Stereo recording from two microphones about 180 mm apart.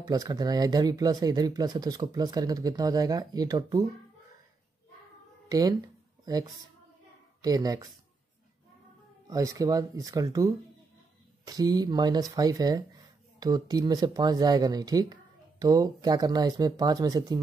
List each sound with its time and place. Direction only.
0.1 s speech: 20° right (ahead or behind)
5.5 s speech: 20° right (ahead or behind)
9.3 s speech: 20° right (ahead or behind)